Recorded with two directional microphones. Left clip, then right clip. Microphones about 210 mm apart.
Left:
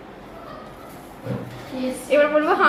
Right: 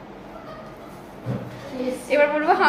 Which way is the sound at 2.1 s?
10° right (ahead or behind).